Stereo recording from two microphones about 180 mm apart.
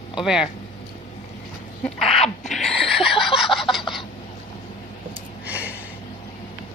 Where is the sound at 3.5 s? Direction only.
Centre (ahead or behind).